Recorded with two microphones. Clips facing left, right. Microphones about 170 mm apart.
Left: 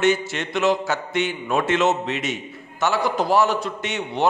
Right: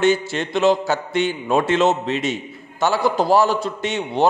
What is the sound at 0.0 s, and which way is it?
A man's voice, 30° right (ahead or behind).